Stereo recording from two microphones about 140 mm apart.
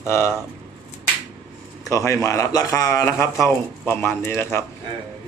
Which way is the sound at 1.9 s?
20° left (ahead or behind).